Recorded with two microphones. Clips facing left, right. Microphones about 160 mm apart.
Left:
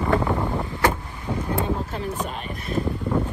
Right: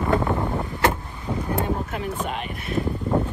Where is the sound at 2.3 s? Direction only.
35° left (ahead or behind).